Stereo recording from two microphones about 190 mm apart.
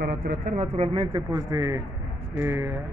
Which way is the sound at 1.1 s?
20° right (ahead or behind).